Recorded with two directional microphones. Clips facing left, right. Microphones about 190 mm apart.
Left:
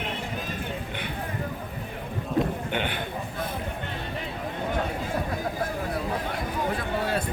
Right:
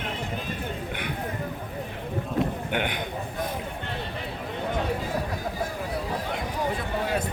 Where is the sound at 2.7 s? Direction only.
15° right (ahead or behind).